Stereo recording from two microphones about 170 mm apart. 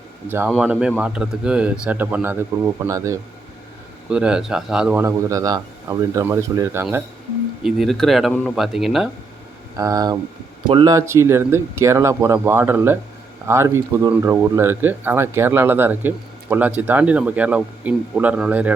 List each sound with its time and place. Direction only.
0.3 s speech: 10° right (ahead or behind)
4.1 s speech: 5° right (ahead or behind)
5.0 s speech: 20° right (ahead or behind)
7.6 s speech: centre (ahead or behind)
9.7 s speech: 20° right (ahead or behind)
10.9 s speech: 15° right (ahead or behind)